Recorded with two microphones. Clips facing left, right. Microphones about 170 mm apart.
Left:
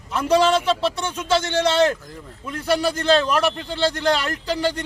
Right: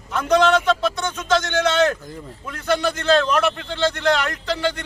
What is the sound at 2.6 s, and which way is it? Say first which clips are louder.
Speech: even; 10° left (ahead or behind).